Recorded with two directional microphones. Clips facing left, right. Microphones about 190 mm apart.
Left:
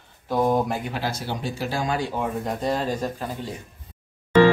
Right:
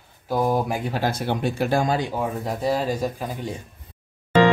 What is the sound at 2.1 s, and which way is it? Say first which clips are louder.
Speech: even; 5° right (ahead or behind).